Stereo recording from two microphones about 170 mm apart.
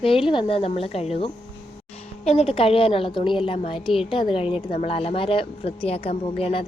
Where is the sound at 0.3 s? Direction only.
30° left (ahead or behind).